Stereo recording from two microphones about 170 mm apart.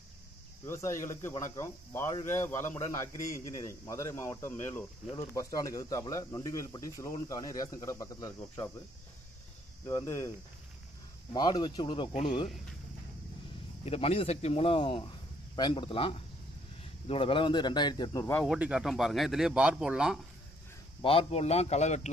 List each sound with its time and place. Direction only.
0.7 s speech: 15° left (ahead or behind)
9.8 s speech: 15° left (ahead or behind)
11.3 s speech: 25° left (ahead or behind)
13.8 s a man's voice: 35° left (ahead or behind); by 18.4 s 15° left (ahead or behind)
18.4 s speech: 5° right (ahead or behind)
21.0 s a man's voice: 35° left (ahead or behind)